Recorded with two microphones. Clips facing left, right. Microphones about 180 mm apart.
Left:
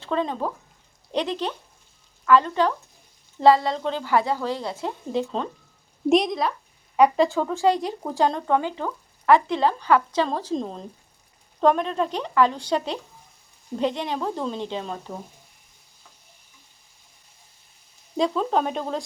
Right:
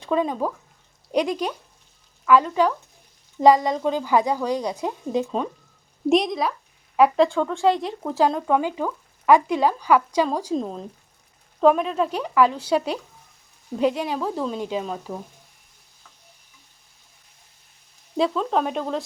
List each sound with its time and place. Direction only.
0.0 s speech: 10° right (ahead or behind)
6.1 s speech: centre (ahead or behind)
18.2 s speech: centre (ahead or behind)